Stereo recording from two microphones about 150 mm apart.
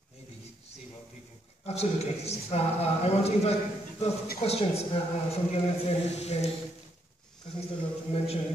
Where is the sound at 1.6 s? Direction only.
45° left (ahead or behind).